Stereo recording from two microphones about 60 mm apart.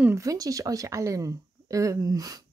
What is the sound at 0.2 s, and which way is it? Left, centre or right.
Speech, right.